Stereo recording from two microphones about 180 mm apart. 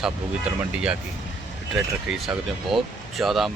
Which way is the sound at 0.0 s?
5° right (ahead or behind).